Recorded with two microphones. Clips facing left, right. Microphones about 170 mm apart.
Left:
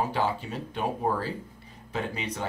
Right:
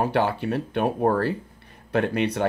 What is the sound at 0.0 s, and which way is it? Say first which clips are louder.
Speech: right 5 dB; 65° right (ahead or behind).